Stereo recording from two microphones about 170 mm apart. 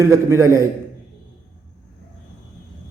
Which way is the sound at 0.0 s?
15° right (ahead or behind).